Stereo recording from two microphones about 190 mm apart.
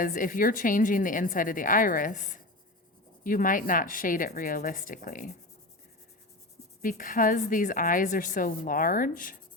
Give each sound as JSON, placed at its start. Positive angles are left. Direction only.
{"t": 0.0, "sound": "a woman's voice", "side_deg": 45}
{"t": 6.8, "sound": "a woman's voice", "side_deg": 45}